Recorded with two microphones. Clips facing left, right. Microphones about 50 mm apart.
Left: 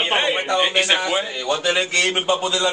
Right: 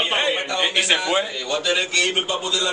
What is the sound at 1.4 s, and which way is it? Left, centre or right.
A man's voice, left.